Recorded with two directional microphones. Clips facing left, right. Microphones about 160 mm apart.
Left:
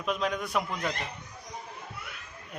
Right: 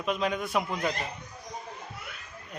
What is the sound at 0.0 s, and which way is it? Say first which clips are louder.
Speech: right 1 dB; centre (ahead or behind).